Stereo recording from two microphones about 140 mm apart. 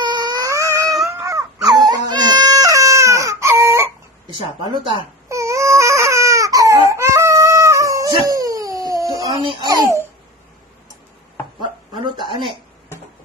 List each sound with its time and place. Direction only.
0.0 s a sound: 30° right (ahead or behind)
1.0 s crying: 20° right (ahead or behind)
4.6 s speech: 35° right (ahead or behind)
5.3 s baby cry: 20° right (ahead or behind)
8.1 s dog: 25° right (ahead or behind)
9.4 s speech: 35° right (ahead or behind)
9.7 s a child's voice: 25° right (ahead or behind)
12.0 s a sound: 35° right (ahead or behind)